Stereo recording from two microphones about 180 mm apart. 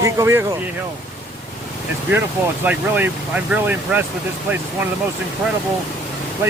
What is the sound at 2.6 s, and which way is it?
Speech, 10° right (ahead or behind).